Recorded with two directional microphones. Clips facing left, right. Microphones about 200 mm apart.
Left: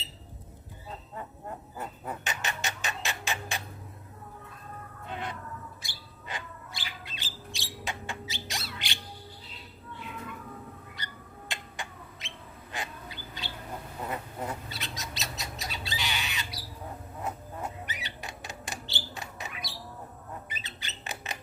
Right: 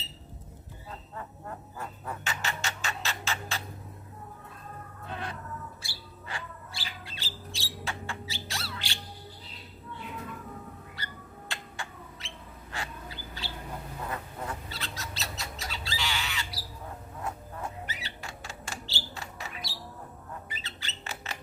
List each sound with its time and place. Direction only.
0.9 s a sound: 20° left (ahead or behind)
5.0 s music: 20° left (ahead or behind)
5.8 s bird: 20° left (ahead or behind)
7.0 s music: 15° left (ahead or behind)
10.9 s bird: 20° left (ahead or behind)
17.2 s a sound: 20° left (ahead or behind)
20.5 s rodents: 20° left (ahead or behind)